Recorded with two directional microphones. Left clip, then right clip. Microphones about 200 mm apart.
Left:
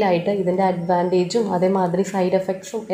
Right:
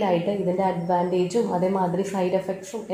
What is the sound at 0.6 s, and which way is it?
A woman's voice, 20° left (ahead or behind).